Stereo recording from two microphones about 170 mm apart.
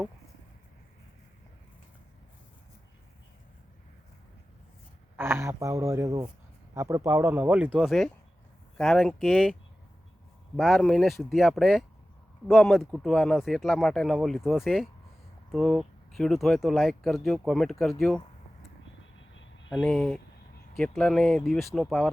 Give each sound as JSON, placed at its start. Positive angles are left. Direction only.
{"t": 5.1, "sound": "speech", "side_deg": -15}
{"t": 10.6, "sound": "speech", "side_deg": 0}
{"t": 19.7, "sound": "speech", "side_deg": 5}